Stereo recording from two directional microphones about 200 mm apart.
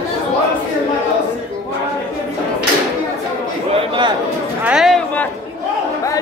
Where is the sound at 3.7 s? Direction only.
25° right (ahead or behind).